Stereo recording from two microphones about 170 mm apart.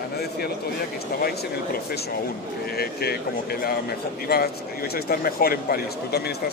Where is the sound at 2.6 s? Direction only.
65° left (ahead or behind).